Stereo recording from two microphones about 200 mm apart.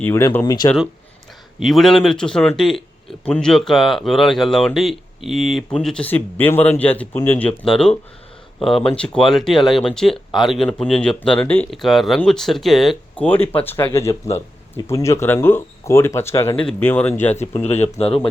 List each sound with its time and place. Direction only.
0.0 s speech: 10° left (ahead or behind)
1.5 s speech: centre (ahead or behind)
17.7 s speech: 30° left (ahead or behind)